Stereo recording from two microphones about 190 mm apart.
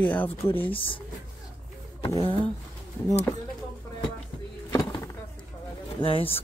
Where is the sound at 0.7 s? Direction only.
30° left (ahead or behind).